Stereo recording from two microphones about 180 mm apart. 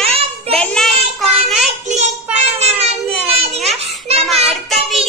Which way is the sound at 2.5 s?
35° right (ahead or behind).